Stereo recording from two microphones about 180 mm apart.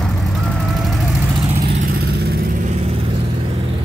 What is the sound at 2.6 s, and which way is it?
Vehicle, 35° right (ahead or behind).